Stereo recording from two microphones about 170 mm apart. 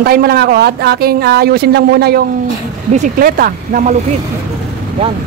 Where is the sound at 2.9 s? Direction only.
50° right (ahead or behind).